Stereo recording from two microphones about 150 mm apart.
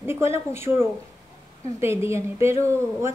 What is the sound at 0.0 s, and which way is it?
A woman's voice, 15° right (ahead or behind).